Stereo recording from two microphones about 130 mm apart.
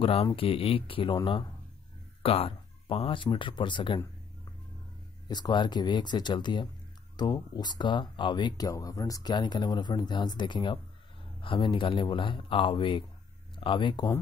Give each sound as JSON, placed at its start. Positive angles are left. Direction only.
{"t": 0.0, "sound": "speech", "side_deg": 45}
{"t": 5.3, "sound": "speech", "side_deg": 35}